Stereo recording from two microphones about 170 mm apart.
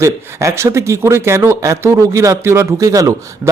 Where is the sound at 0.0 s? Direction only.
15° right (ahead or behind).